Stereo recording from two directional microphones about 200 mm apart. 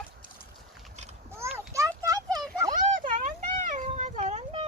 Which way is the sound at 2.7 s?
40° right (ahead or behind).